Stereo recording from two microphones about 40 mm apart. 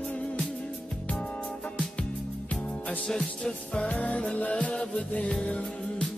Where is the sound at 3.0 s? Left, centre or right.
Centre.